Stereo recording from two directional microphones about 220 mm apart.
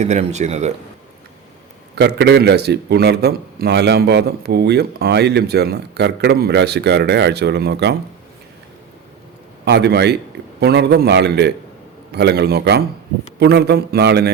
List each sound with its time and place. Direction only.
0.0 s speech: 30° right (ahead or behind)
2.0 s a man's voice: 50° right (ahead or behind)
9.6 s a man's voice: 50° right (ahead or behind)